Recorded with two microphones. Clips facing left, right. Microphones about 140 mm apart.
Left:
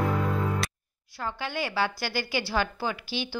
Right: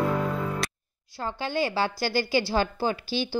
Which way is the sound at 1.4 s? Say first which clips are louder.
Right 3 dB; 30° right (ahead or behind).